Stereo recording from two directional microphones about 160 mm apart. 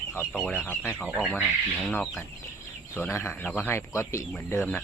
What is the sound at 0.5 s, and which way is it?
Speech, 10° left (ahead or behind).